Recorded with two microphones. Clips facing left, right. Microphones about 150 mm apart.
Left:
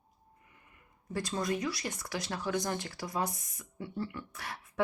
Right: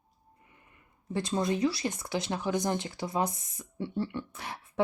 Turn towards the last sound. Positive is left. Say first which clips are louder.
# right 5 dB
turn(degrees=-20)  # may be behind; listen again after turning